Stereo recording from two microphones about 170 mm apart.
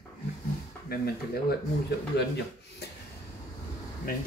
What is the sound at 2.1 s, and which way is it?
Speech, 75° left (ahead or behind).